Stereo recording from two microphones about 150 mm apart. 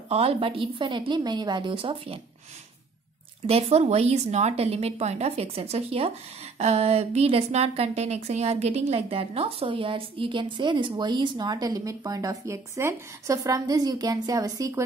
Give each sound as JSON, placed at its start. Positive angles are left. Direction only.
{"t": 0.1, "sound": "a woman's voice", "side_deg": -40}
{"t": 3.4, "sound": "a woman's voice", "side_deg": -45}